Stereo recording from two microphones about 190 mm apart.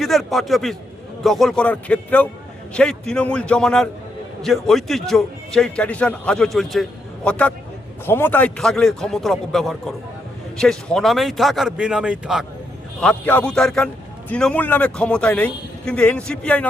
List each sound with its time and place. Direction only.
0.0 s a man's voice: centre (ahead or behind)
13.0 s a man's voice: 5° left (ahead or behind)